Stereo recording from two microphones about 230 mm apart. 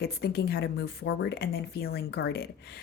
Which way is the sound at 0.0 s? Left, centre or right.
Left.